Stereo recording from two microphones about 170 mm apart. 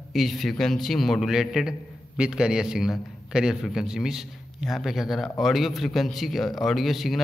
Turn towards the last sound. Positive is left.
turn(degrees=0)  # may be behind; listen again after turning